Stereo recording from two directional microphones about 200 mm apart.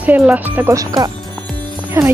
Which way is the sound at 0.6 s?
15° right (ahead or behind).